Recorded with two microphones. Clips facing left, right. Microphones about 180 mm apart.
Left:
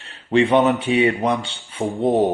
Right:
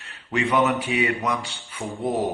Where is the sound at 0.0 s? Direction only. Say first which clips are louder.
Left 8 dB; 30° left (ahead or behind).